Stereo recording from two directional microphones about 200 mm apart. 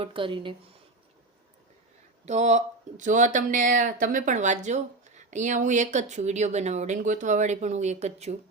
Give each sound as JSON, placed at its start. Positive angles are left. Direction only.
{"t": 0.0, "sound": "speech", "side_deg": -25}
{"t": 2.2, "sound": "speech", "side_deg": -35}